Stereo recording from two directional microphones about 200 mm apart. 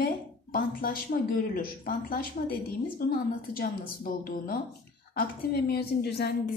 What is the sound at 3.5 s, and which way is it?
Speech, 45° left (ahead or behind).